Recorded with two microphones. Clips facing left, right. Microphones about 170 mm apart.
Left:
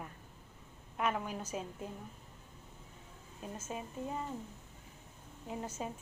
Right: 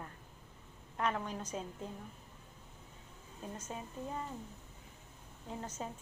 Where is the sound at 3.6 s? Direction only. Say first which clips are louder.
Left 4 dB; 5° left (ahead or behind).